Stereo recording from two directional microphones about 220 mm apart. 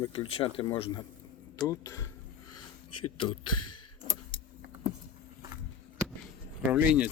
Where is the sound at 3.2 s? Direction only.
20° left (ahead or behind).